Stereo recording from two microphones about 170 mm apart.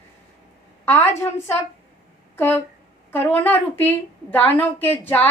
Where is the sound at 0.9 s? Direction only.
15° left (ahead or behind).